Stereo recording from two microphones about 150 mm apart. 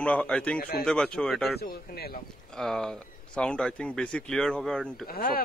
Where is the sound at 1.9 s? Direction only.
90° left.